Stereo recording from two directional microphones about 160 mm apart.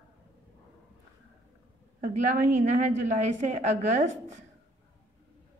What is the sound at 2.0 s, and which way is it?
A woman's voice, 50° right (ahead or behind).